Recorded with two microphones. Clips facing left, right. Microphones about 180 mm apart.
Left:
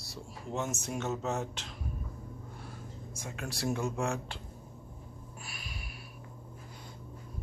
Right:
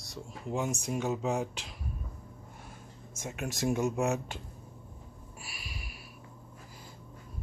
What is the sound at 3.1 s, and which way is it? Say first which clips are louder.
Speech: right 4 dB; 20° right (ahead or behind).